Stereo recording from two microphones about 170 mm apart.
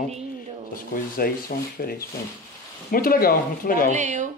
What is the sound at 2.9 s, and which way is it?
Speech, 60° left (ahead or behind).